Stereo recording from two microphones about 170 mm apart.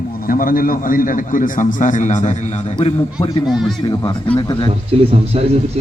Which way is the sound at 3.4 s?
Centre (ahead or behind).